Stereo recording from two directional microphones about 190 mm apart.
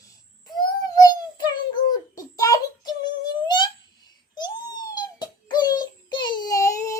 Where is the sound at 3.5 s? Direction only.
25° left (ahead or behind).